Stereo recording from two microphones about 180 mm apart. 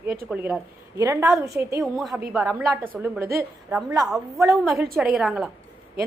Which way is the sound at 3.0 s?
15° right (ahead or behind).